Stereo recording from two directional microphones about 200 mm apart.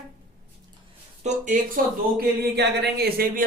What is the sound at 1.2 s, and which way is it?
Speech, 45° right (ahead or behind).